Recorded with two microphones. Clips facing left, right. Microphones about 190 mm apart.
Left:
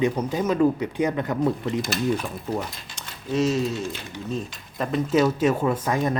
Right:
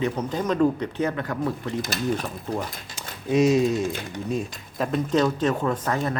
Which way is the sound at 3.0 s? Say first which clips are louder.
Right 3 dB; 15° right (ahead or behind).